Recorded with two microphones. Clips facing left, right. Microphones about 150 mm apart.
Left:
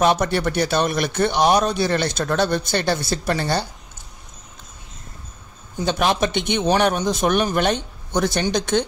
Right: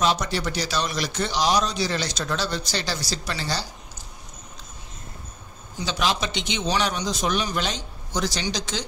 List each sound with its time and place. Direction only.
0.0 s a man's voice: 55° left (ahead or behind)
5.8 s a man's voice: 55° left (ahead or behind)